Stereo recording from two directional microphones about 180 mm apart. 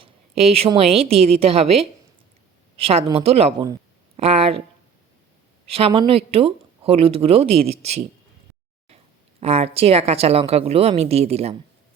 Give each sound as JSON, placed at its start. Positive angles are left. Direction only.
{"t": 0.0, "sound": "a sound", "side_deg": -35}
{"t": 0.8, "sound": "a woman's voice", "side_deg": -35}
{"t": 5.6, "sound": "a woman's voice", "side_deg": -30}
{"t": 9.4, "sound": "a woman's voice", "side_deg": -35}